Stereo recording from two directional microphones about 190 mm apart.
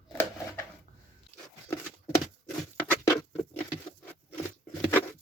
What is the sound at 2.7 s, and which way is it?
Patter, 10° left (ahead or behind).